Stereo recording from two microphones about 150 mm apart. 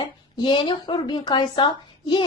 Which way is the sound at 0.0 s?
30° left (ahead or behind).